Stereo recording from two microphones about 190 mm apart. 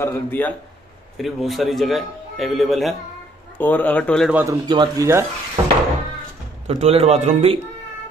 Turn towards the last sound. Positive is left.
turn(degrees=-35)  # may be behind; listen again after turning